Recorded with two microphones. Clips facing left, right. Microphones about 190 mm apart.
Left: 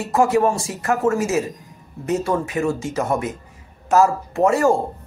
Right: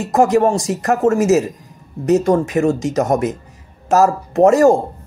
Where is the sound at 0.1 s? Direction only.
40° right (ahead or behind).